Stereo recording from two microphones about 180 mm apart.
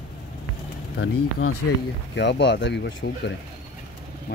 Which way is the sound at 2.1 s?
75° left (ahead or behind).